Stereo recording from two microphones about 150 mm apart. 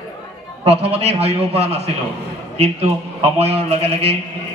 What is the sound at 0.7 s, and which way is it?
A man's voice, 45° right (ahead or behind).